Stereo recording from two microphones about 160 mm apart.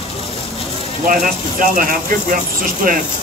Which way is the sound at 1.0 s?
60° right (ahead or behind).